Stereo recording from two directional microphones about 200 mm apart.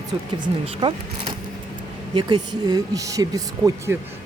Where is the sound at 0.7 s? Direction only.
25° right (ahead or behind).